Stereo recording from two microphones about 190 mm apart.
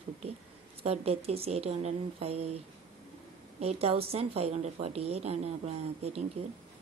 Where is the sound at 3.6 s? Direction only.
30° right (ahead or behind).